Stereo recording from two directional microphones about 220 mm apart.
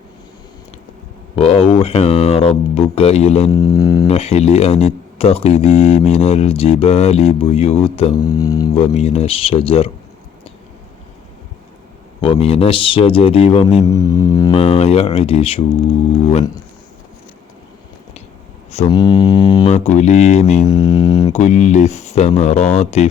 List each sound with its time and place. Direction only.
1.4 s speech: 25° left (ahead or behind)
3.5 s didgeridoo: 15° left (ahead or behind)
4.0 s speech: 30° left (ahead or behind)
8.9 s speech: 30° left (ahead or behind)
12.2 s speech: 25° left (ahead or behind)
13.8 s speech: 15° left (ahead or behind)
18.9 s speech: 20° left (ahead or behind)
19.7 s speech: 30° left (ahead or behind)
20.7 s speech: 20° left (ahead or behind)
21.3 s speech: 30° left (ahead or behind)